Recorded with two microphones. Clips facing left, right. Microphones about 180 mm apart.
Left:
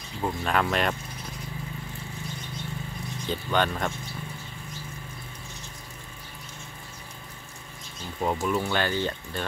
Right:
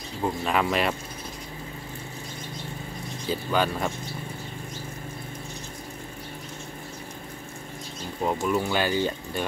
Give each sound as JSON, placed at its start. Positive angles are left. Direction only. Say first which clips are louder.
{"t": 0.2, "sound": "speech", "louder": "right 1 dB", "side_deg": -5}
{"t": 3.3, "sound": "speech", "louder": "right 1 dB", "side_deg": -5}
{"t": 8.2, "sound": "speech", "louder": "right 1 dB", "side_deg": -5}